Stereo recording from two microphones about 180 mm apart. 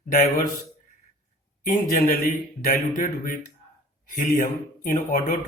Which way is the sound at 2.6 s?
50° left (ahead or behind).